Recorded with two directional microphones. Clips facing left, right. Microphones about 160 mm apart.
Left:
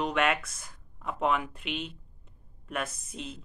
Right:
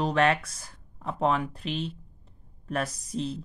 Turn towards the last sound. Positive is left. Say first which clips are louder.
# right 9 dB
turn(degrees=-35)  # may be behind; listen again after turning